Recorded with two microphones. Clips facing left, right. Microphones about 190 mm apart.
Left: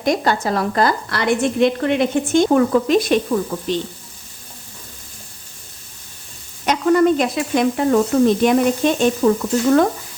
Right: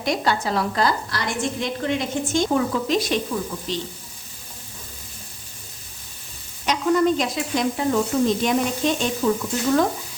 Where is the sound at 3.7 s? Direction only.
55° left (ahead or behind).